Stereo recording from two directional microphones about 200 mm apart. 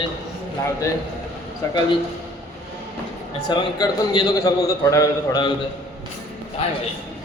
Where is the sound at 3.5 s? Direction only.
20° left (ahead or behind).